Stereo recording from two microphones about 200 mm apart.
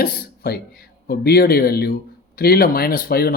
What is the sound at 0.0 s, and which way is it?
Speech, 50° left (ahead or behind).